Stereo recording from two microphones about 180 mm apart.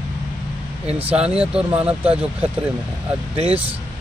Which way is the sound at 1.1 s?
5° right (ahead or behind).